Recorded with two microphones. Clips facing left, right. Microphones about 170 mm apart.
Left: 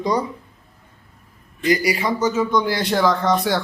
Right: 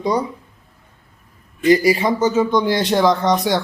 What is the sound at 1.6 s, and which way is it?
A man's voice, 25° right (ahead or behind).